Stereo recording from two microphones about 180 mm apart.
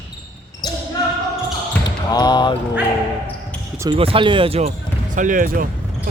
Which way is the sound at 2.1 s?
25° left (ahead or behind).